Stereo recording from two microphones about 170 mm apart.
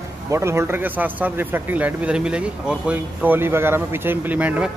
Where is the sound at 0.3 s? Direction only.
15° right (ahead or behind).